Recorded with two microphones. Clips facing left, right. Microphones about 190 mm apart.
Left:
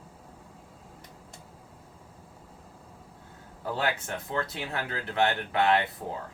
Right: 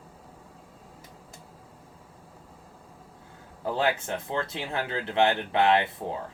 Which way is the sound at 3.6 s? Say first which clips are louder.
Right 4 dB; 25° right (ahead or behind).